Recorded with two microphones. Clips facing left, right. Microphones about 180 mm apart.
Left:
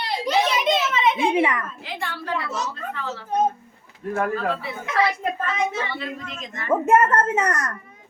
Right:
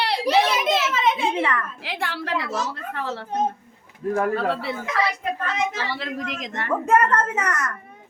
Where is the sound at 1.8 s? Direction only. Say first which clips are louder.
Right 2 dB; 75° right (ahead or behind).